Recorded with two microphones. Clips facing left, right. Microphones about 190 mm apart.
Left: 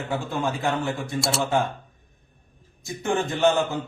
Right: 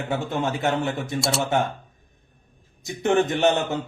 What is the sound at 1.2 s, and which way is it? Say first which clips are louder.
Speech: right 1 dB; centre (ahead or behind).